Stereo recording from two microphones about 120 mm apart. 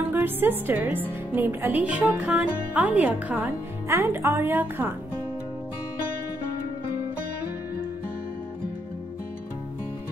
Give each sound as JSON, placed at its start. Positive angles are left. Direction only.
{"t": 0.1, "sound": "a woman's voice", "side_deg": -15}